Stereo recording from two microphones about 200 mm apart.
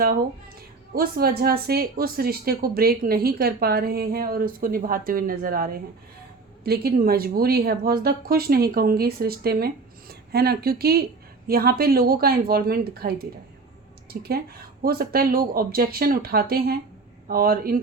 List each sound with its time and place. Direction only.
0.9 s speech: 50° right (ahead or behind)
6.7 s speech: 50° right (ahead or behind)